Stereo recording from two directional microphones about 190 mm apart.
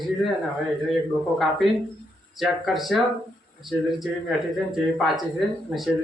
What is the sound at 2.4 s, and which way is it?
A man's voice, centre (ahead or behind).